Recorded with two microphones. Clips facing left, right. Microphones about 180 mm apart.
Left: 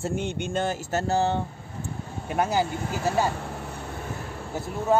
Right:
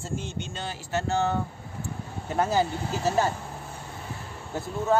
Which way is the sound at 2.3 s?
15° left (ahead or behind).